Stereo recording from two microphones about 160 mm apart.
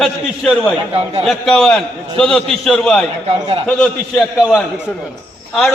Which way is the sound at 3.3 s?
35° right (ahead or behind).